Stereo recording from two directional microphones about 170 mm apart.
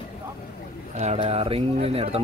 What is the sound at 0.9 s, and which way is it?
Speech, 35° right (ahead or behind).